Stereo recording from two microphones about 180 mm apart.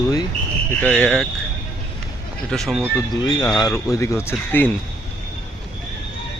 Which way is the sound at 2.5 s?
Centre (ahead or behind).